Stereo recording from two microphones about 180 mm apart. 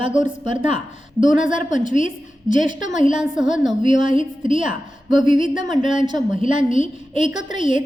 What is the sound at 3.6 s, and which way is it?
Speech, 25° right (ahead or behind).